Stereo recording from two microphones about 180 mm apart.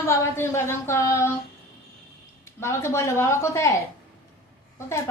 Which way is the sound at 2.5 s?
15° left (ahead or behind).